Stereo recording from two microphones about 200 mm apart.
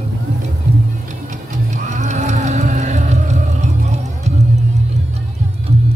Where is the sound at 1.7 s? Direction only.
35° right (ahead or behind).